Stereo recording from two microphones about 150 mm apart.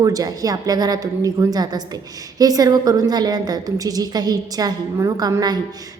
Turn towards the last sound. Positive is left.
turn(degrees=-25)  # may be behind; listen again after turning